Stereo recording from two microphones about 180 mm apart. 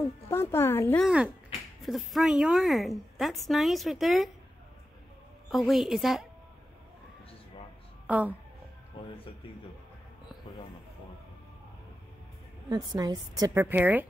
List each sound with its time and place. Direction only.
0.3 s speech: 15° left (ahead or behind)
0.9 s a woman's voice: 5° right (ahead or behind)
5.5 s a woman's voice: centre (ahead or behind)
8.1 s speech: 10° right (ahead or behind)
9.0 s music: 30° left (ahead or behind)
12.6 s a woman's voice: 20° right (ahead or behind)